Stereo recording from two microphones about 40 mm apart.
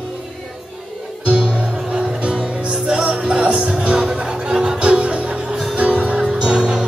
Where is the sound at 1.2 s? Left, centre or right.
Right.